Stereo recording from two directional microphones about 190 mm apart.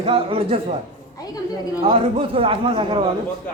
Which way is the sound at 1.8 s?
30° right (ahead or behind).